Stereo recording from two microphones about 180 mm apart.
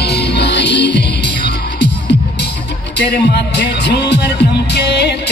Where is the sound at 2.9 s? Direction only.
70° left (ahead or behind).